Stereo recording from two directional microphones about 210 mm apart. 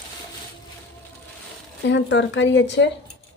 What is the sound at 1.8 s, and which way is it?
Speech, 60° left (ahead or behind).